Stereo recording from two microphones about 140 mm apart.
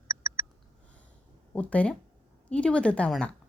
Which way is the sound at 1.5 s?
10° left (ahead or behind).